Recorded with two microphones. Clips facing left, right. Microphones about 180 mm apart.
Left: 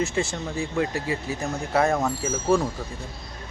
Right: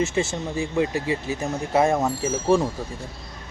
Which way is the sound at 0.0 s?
25° right (ahead or behind).